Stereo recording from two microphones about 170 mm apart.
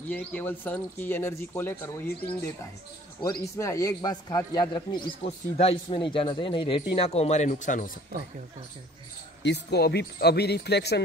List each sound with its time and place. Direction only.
0.1 s speech: 10° left (ahead or behind)
3.2 s a man's voice: 20° left (ahead or behind); by 7.9 s 50° left (ahead or behind)
9.4 s a man's voice: 80° left